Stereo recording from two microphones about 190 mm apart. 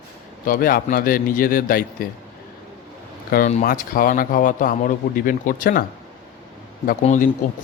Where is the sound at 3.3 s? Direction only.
50° left (ahead or behind).